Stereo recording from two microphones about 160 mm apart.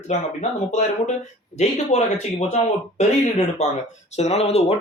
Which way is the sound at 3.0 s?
45° left (ahead or behind).